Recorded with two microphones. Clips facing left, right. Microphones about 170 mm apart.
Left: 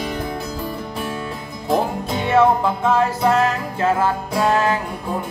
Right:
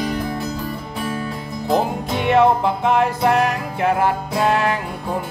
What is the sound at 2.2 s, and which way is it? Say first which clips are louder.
Music: right 1 dB; 15° right (ahead or behind).